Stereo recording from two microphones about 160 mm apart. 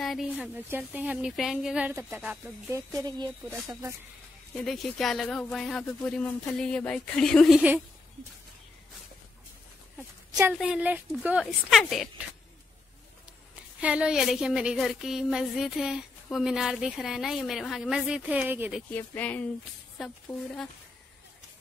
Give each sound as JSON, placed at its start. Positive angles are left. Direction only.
{"t": 0.0, "sound": "speech", "side_deg": 0}
{"t": 3.0, "sound": "speech", "side_deg": -20}
{"t": 4.6, "sound": "a woman's voice", "side_deg": 0}
{"t": 10.6, "sound": "a woman's voice", "side_deg": -5}
{"t": 13.7, "sound": "a woman's voice", "side_deg": -5}
{"t": 18.9, "sound": "speech", "side_deg": 10}
{"t": 20.0, "sound": "a woman's voice", "side_deg": 0}